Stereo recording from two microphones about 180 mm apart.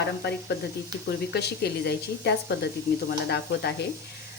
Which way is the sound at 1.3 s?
65° left (ahead or behind).